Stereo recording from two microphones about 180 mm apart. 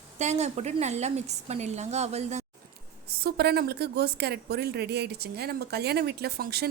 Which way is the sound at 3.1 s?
65° right (ahead or behind).